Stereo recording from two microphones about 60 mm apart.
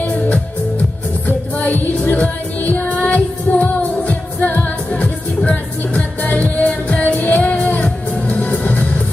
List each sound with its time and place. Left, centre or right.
0.0 s music: left